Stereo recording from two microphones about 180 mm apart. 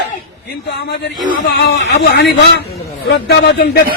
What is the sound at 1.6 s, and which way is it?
A man's voice, 65° left (ahead or behind).